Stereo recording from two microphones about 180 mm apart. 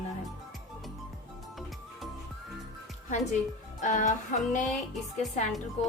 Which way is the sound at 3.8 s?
40° left (ahead or behind).